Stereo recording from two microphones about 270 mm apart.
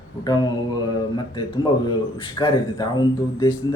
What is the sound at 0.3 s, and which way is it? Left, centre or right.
Speech, centre.